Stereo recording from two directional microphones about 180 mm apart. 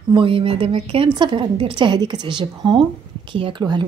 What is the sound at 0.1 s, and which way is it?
A woman's voice, 30° right (ahead or behind).